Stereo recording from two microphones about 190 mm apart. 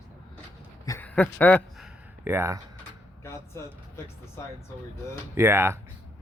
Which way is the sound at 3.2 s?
15° left (ahead or behind).